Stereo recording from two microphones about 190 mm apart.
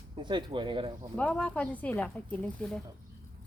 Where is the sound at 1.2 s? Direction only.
10° left (ahead or behind).